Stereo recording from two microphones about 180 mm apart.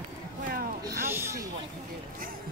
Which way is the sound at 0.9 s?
15° right (ahead or behind).